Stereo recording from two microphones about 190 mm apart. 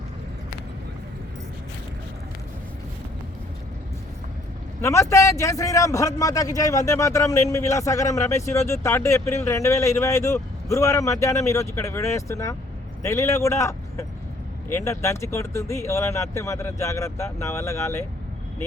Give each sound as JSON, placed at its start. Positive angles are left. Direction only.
{"t": 4.8, "sound": "a man's voice", "side_deg": 15}